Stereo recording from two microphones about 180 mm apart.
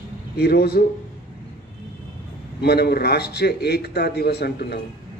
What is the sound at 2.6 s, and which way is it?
A man's voice, 65° left (ahead or behind).